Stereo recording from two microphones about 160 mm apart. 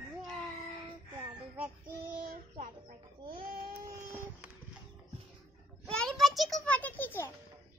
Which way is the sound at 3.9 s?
15° right (ahead or behind).